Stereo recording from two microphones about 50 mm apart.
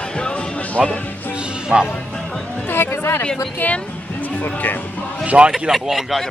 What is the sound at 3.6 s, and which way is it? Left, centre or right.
Music, left.